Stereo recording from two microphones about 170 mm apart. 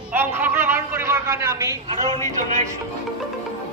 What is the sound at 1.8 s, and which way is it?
Speech, 30° right (ahead or behind).